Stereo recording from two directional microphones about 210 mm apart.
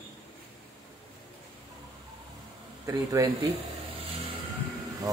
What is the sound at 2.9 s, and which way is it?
Speech, 15° right (ahead or behind).